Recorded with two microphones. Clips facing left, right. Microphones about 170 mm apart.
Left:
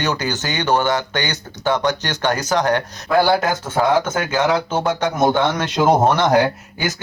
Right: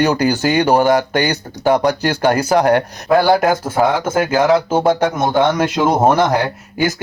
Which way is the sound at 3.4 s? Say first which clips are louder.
Right 4 dB; 30° right (ahead or behind).